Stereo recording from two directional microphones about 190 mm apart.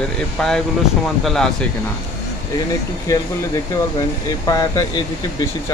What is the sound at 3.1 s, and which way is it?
Speech, 15° left (ahead or behind).